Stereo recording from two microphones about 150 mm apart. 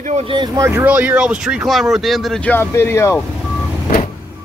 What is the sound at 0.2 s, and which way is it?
Speech, 35° right (ahead or behind).